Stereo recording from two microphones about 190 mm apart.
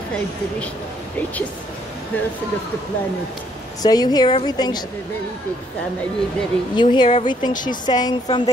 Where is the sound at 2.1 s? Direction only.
10° left (ahead or behind).